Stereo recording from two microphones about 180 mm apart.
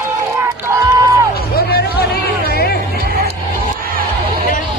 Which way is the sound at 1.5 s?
60° left (ahead or behind).